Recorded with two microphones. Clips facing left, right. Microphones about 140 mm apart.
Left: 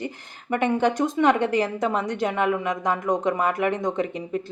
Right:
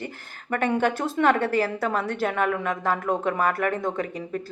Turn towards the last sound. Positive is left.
turn(degrees=20)  # may be behind; listen again after turning